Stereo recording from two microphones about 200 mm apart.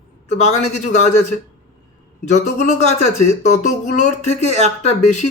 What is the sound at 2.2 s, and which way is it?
Speech, 35° left (ahead or behind).